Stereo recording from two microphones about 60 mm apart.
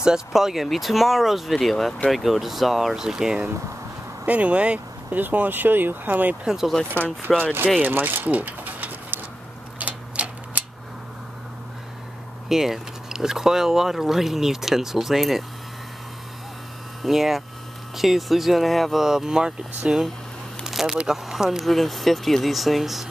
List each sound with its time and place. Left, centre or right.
0.0 s speech: centre
4.3 s speech: right
5.2 s speech: right
6.4 s speech: centre
7.3 s speech: centre
7.8 s a sound: right
9.8 s tick-tock: right
12.4 s speech: centre
17.0 s speech: centre
20.6 s a sound: centre
21.1 s speech: centre